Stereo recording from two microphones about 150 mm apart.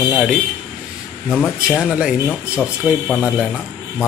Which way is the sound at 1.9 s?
5° right (ahead or behind).